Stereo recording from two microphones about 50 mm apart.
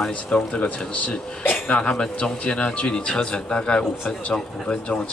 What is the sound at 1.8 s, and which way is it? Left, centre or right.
A man's voice, centre.